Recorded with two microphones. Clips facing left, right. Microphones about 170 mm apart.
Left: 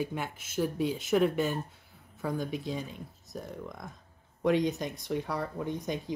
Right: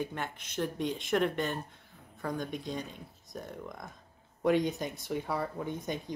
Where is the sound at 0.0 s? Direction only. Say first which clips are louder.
Left 2 dB; 10° left (ahead or behind).